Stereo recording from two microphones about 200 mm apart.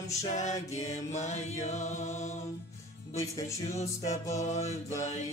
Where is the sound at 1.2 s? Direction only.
35° left (ahead or behind).